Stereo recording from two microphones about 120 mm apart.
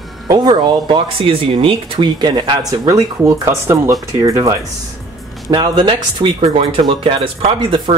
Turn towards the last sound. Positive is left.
turn(degrees=-50)  # may be behind; listen again after turning